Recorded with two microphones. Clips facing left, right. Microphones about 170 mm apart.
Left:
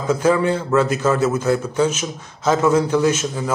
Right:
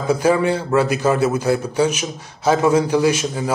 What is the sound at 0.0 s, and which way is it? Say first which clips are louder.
A man's voice: right 1 dB; 15° right (ahead or behind).